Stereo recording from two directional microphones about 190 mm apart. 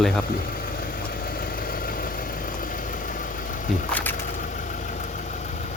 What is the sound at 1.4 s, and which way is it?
Vehicle, 50° left (ahead or behind).